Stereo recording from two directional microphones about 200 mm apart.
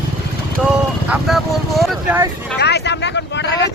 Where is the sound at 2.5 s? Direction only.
55° left (ahead or behind).